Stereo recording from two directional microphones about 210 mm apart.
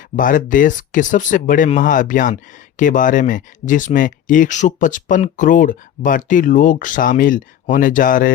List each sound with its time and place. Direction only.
0.2 s speech: 40° left (ahead or behind)